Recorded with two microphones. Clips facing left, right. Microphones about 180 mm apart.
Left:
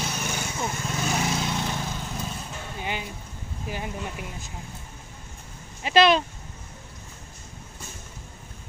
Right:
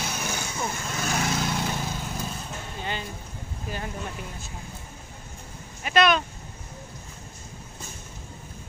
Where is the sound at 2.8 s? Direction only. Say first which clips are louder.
Left 1 dB; 10° left (ahead or behind).